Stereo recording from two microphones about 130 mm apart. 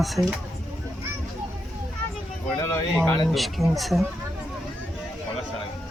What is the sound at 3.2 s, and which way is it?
Speech, centre (ahead or behind).